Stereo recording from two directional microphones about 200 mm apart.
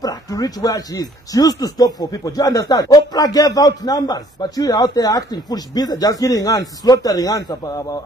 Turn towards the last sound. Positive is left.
turn(degrees=20)  # may be behind; listen again after turning